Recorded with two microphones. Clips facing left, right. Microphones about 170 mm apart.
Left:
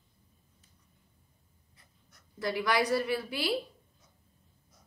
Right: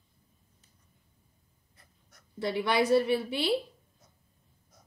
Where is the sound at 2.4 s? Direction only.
25° right (ahead or behind).